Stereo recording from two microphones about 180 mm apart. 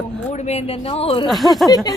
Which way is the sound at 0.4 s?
35° left (ahead or behind).